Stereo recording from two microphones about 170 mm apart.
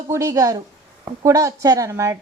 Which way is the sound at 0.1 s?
20° right (ahead or behind).